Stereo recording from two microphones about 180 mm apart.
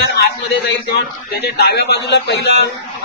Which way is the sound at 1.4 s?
65° left (ahead or behind).